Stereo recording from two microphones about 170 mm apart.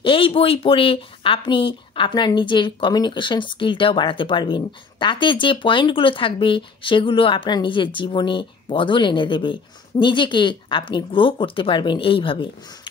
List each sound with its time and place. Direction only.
0.0 s speech: 30° left (ahead or behind)